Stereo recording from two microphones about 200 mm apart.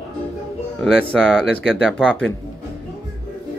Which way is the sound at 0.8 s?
5° left (ahead or behind).